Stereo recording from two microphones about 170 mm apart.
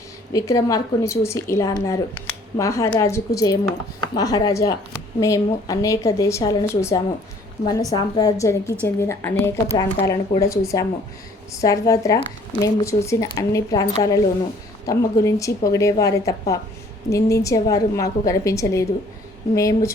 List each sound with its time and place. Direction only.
0.3 s a woman's voice: 20° left (ahead or behind)